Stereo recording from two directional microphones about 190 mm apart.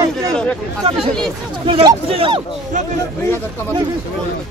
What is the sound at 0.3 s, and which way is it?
Speech, 5° left (ahead or behind).